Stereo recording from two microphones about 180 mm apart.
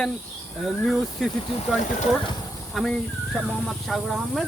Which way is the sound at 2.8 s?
Centre (ahead or behind).